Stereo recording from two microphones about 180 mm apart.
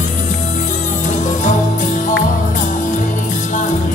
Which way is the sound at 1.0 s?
45° left (ahead or behind).